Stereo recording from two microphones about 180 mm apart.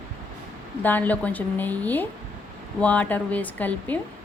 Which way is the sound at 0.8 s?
10° left (ahead or behind).